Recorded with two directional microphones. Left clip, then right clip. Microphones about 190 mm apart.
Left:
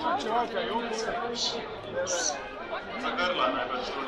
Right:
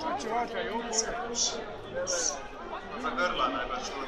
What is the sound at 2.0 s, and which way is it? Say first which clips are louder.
Speech: left 2 dB; 40° left (ahead or behind).